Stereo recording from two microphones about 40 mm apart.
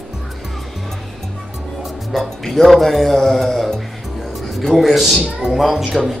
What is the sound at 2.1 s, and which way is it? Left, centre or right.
A man's voice, centre.